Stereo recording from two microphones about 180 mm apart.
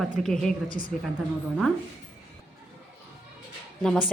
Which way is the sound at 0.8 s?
50° left (ahead or behind).